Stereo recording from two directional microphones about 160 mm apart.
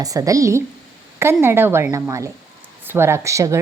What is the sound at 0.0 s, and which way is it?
A woman's voice, 20° right (ahead or behind).